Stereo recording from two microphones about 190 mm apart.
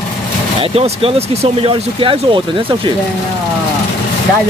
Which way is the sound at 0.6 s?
30° right (ahead or behind).